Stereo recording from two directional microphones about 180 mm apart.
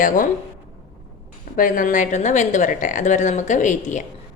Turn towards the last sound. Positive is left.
turn(degrees=45)  # may be behind; listen again after turning